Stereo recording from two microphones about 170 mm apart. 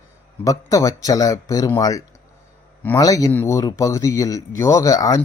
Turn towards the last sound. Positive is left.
turn(degrees=20)  # may be behind; listen again after turning